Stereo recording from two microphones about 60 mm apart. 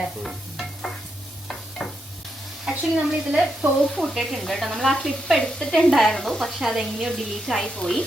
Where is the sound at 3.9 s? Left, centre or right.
Centre.